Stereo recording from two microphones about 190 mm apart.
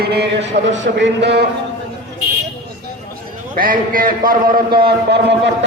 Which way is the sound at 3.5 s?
50° right (ahead or behind).